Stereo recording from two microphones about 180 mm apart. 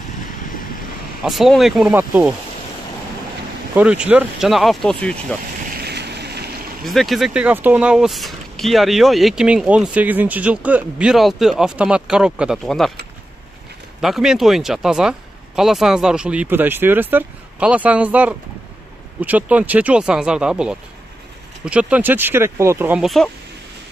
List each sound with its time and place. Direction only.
0.5 s vehicle: 50° left (ahead or behind)
1.2 s speech: centre (ahead or behind)
3.7 s speech: 5° right (ahead or behind)
5.7 s vehicle: 60° right (ahead or behind)
6.8 s speech: centre (ahead or behind)
14.0 s speech: centre (ahead or behind)
23.0 s speech: centre (ahead or behind)